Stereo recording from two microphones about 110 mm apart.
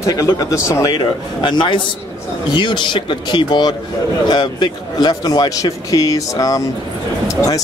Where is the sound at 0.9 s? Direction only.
45° left (ahead or behind).